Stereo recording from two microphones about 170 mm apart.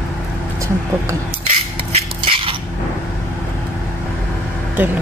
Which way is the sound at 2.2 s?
30° right (ahead or behind).